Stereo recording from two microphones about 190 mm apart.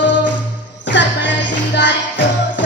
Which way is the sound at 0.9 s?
70° left (ahead or behind).